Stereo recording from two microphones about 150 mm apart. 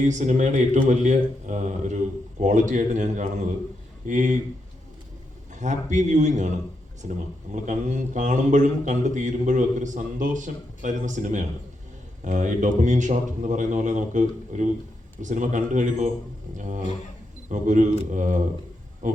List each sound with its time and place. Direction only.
0.0 s a man's voice: 55° right (ahead or behind)
5.5 s a man's voice: 55° right (ahead or behind)